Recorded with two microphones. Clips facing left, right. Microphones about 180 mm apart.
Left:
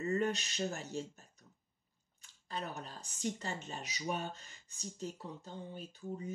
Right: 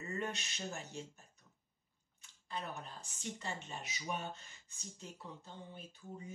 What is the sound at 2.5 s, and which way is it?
Speech, 40° left (ahead or behind).